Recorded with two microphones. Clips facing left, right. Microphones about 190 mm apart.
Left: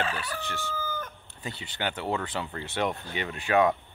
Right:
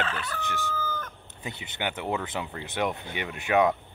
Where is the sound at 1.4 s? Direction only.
15° right (ahead or behind).